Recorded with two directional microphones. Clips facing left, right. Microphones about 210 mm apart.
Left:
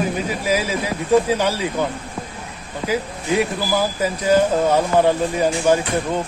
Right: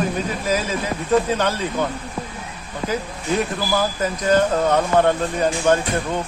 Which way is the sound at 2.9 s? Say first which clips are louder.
Left 3 dB; 10° left (ahead or behind).